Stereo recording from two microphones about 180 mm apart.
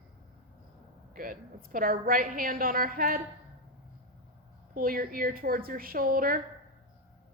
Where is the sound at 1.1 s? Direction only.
50° right (ahead or behind).